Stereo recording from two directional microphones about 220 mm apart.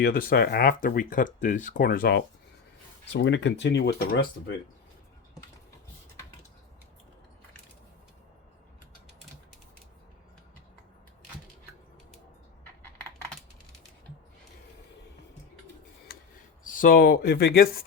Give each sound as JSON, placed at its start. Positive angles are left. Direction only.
{"t": 0.0, "sound": "speech", "side_deg": 45}
{"t": 3.1, "sound": "speech", "side_deg": 55}
{"t": 16.1, "sound": "a sound", "side_deg": 45}
{"t": 16.6, "sound": "speech", "side_deg": 40}